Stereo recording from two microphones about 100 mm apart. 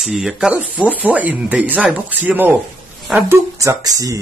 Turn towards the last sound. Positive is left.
turn(degrees=-35)  # may be behind; listen again after turning